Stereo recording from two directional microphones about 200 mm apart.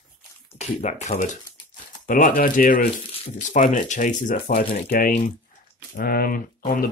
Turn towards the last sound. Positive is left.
turn(degrees=45)  # may be behind; listen again after turning